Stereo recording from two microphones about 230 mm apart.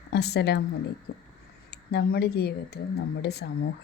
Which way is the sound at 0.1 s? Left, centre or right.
Left.